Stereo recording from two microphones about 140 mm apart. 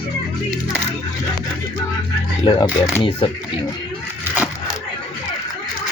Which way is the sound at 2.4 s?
30° left (ahead or behind).